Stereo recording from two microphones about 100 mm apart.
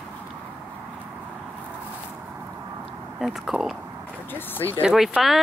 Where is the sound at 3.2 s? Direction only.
5° right (ahead or behind).